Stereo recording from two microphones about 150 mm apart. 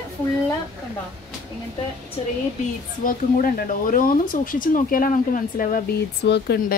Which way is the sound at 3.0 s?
65° left (ahead or behind).